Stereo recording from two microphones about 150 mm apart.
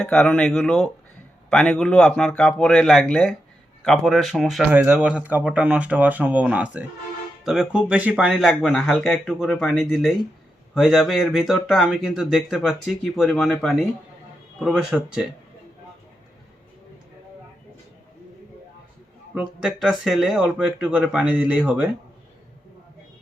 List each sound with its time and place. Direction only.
0.0 s speech: 5° left (ahead or behind)
19.3 s speech: 5° right (ahead or behind)